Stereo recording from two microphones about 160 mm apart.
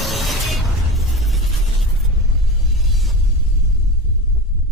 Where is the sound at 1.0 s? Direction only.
Centre (ahead or behind).